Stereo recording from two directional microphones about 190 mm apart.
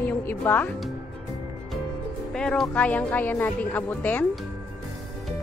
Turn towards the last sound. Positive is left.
turn(degrees=10)  # may be behind; listen again after turning